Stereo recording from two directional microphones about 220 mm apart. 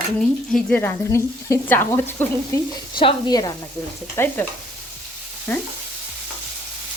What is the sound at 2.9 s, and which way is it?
Speech, 20° left (ahead or behind).